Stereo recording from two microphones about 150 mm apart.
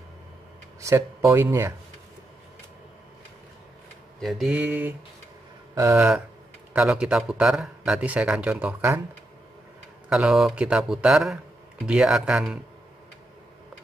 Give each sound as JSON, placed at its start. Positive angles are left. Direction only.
{"t": 0.7, "sound": "speech", "side_deg": -20}
{"t": 4.2, "sound": "speech", "side_deg": 0}
{"t": 5.9, "sound": "speech", "side_deg": -5}
{"t": 10.0, "sound": "a man's voice", "side_deg": -5}